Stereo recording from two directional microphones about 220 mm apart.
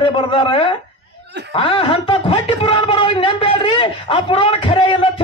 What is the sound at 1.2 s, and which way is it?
Snicker, 50° right (ahead or behind).